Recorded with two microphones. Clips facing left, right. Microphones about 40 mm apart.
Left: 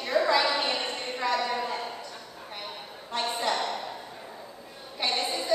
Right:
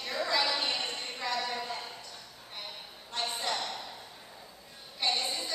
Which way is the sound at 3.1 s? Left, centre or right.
Left.